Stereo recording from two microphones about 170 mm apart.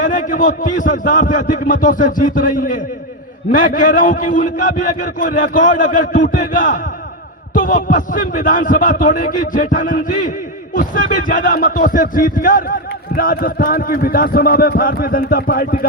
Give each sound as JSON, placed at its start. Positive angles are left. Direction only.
{"t": 0.0, "sound": "a man's voice", "side_deg": 50}